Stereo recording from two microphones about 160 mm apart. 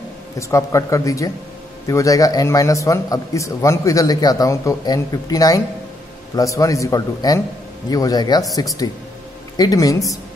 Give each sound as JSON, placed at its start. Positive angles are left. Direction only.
{"t": 0.4, "sound": "a man's voice", "side_deg": 20}